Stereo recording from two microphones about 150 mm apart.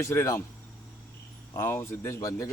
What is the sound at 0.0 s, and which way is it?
Speech, 20° left (ahead or behind).